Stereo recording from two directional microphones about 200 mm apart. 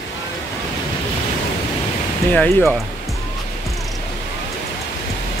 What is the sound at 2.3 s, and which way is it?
Speech, 10° left (ahead or behind).